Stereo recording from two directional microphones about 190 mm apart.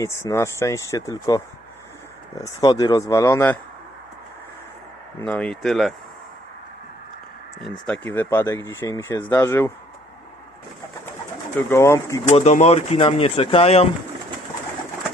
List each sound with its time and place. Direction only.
0.0 s speech: 15° left (ahead or behind)
2.4 s speech: 20° left (ahead or behind)
5.2 s speech: 5° left (ahead or behind)
7.6 s speech: 5° left (ahead or behind)
11.7 s speech: 15° left (ahead or behind)
12.3 s speech: 35° left (ahead or behind)